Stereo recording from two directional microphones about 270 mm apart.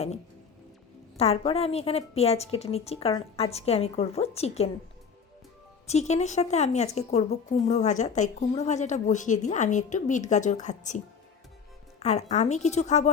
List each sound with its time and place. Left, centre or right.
1.1 s a woman's voice: left
5.9 s a woman's voice: left